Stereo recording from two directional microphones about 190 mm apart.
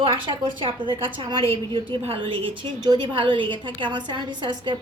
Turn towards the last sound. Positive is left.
turn(degrees=-25)  # may be behind; listen again after turning